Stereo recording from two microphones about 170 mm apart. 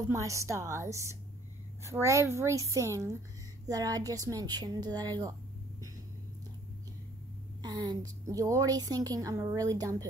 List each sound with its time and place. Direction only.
0.0 s a woman's voice: 20° right (ahead or behind)
7.6 s a woman's voice: 25° right (ahead or behind)